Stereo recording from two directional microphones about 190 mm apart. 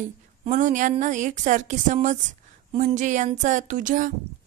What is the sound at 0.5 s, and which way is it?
A woman's voice, 40° right (ahead or behind).